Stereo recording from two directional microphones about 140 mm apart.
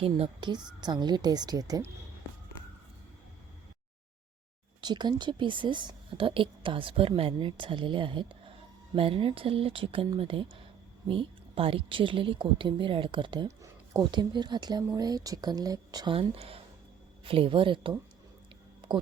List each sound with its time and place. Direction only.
0.0 s a woman's voice: 40° right (ahead or behind)
4.8 s a woman's voice: 30° right (ahead or behind)
16.1 s a woman's voice: 45° right (ahead or behind)